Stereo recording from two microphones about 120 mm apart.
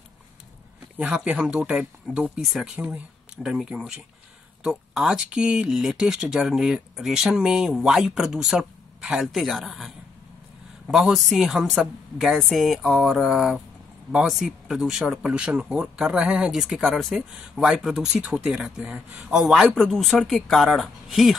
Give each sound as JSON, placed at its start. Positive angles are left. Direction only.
{"t": 0.9, "sound": "speech", "side_deg": -10}